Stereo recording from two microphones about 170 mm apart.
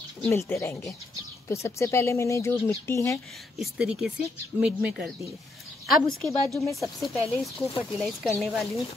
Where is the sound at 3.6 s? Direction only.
5° right (ahead or behind).